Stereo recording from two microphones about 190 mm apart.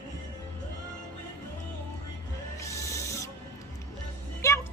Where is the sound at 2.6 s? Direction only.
15° left (ahead or behind).